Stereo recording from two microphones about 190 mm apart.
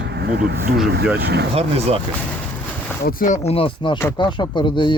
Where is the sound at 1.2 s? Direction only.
60° right (ahead or behind).